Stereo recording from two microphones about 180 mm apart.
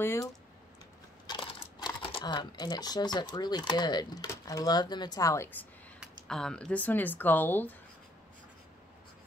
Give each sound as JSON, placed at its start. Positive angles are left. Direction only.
{"t": 0.0, "sound": "speech", "side_deg": 15}